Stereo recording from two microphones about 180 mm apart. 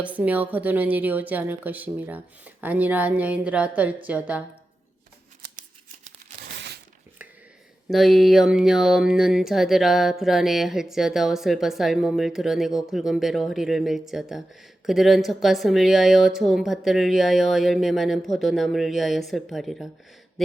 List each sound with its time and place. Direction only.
0.0 s a woman's voice: 10° right (ahead or behind)
6.5 s a sound: 70° right (ahead or behind)
7.9 s speech: centre (ahead or behind)